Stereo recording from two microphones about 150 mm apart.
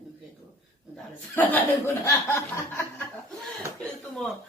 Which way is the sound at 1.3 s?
10° left (ahead or behind).